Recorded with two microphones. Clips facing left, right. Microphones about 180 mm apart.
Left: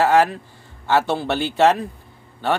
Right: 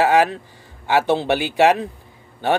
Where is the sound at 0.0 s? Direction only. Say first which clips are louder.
Even; 15° right (ahead or behind).